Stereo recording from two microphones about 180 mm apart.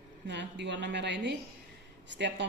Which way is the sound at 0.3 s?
75° right (ahead or behind).